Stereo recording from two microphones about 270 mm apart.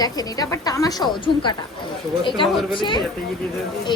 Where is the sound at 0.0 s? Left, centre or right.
Centre.